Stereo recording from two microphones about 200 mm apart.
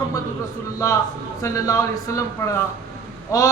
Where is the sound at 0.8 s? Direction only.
15° left (ahead or behind).